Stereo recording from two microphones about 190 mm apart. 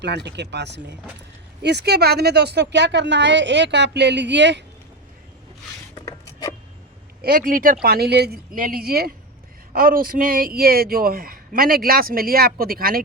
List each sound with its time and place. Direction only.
0.0 s speech: 65° right (ahead or behind)
5.9 s a sound: 20° left (ahead or behind)
7.2 s speech: 50° right (ahead or behind)